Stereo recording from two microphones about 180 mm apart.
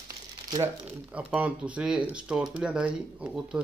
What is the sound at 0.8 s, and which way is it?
Speech, 10° right (ahead or behind).